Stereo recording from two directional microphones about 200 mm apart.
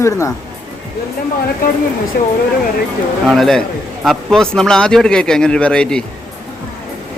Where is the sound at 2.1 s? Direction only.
50° left (ahead or behind).